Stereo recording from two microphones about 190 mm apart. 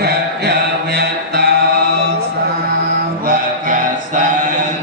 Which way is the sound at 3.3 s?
45° right (ahead or behind).